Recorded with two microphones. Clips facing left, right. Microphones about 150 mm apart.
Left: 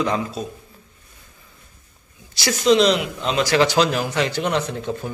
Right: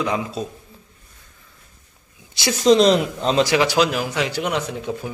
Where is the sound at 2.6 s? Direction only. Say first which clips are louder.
Right 2 dB; 40° right (ahead or behind).